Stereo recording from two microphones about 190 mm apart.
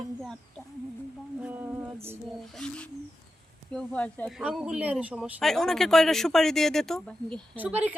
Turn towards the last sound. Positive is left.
turn(degrees=-5)  # may be behind; listen again after turning